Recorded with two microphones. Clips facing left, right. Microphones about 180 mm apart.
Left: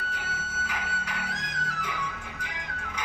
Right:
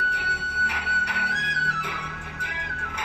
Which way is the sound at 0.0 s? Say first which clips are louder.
Right 4 dB; 70° right (ahead or behind).